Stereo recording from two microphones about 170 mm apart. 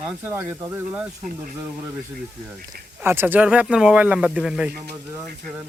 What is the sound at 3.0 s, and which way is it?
Speech, 15° right (ahead or behind).